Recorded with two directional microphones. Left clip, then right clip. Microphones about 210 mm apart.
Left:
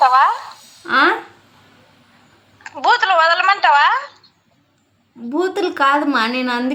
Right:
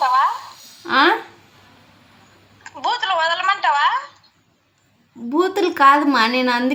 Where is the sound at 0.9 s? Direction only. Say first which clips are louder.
Left 1 dB; centre (ahead or behind).